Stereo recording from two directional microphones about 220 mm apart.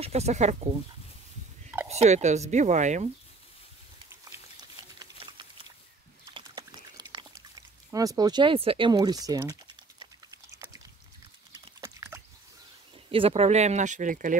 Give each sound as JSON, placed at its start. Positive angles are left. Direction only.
{"t": 0.0, "sound": "speech", "side_deg": -30}
{"t": 1.9, "sound": "speech", "side_deg": -30}
{"t": 4.1, "sound": "a sound", "side_deg": -15}
{"t": 6.3, "sound": "pour", "side_deg": -20}
{"t": 11.8, "sound": "dog", "side_deg": -10}
{"t": 13.1, "sound": "speech", "side_deg": -25}